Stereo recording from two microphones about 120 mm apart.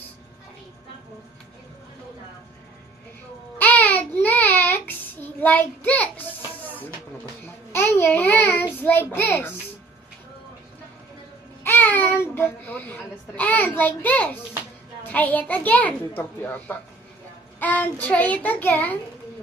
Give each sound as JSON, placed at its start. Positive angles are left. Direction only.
{"t": 3.6, "sound": "child singing", "side_deg": 15}
{"t": 5.4, "sound": "a child's voice", "side_deg": 15}
{"t": 7.7, "sound": "babbling", "side_deg": 20}
{"t": 8.8, "sound": "a child's voice", "side_deg": 20}
{"t": 11.6, "sound": "child singing", "side_deg": 15}
{"t": 12.3, "sound": "a child's voice", "side_deg": 15}
{"t": 17.6, "sound": "child singing", "side_deg": 15}
{"t": 18.0, "sound": "a child's voice", "side_deg": 15}